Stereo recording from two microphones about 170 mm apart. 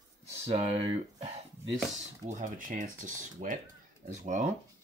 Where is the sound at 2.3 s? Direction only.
50° right (ahead or behind).